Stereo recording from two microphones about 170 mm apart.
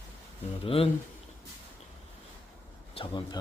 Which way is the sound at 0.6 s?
35° left (ahead or behind).